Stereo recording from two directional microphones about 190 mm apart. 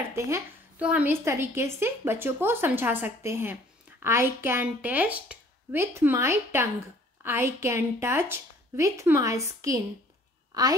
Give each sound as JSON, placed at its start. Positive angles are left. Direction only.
{"t": 0.1, "sound": "a woman's voice", "side_deg": -10}